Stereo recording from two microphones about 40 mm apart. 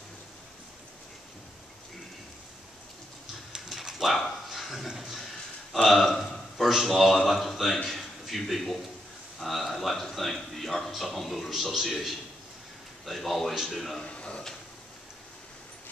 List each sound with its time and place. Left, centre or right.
3.5 s dog: centre
4.1 s bow-wow: centre
5.7 s speech: centre
14.0 s a sound: left